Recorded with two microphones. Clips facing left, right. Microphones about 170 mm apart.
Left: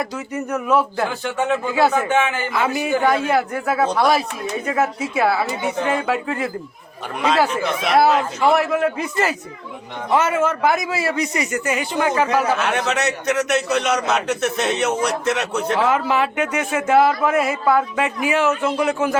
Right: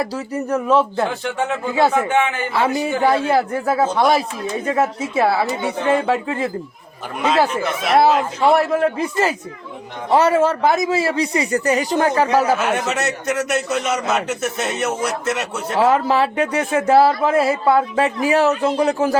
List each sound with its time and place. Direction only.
0.0 s speech: 35° right (ahead or behind)
7.2 s a man's voice: centre (ahead or behind)
8.4 s a man's voice: 30° right (ahead or behind)
12.6 s a man's voice: 5° right (ahead or behind)
15.8 s a man's voice: 35° right (ahead or behind)